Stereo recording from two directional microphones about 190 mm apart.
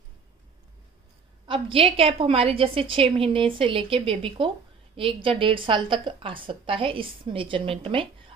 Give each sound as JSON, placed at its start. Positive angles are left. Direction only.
{"t": 1.5, "sound": "a woman's voice", "side_deg": -30}